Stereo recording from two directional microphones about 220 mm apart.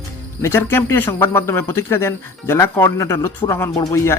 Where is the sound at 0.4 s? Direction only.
10° left (ahead or behind).